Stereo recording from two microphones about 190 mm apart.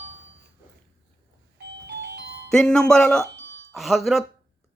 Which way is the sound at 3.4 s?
65° right (ahead or behind).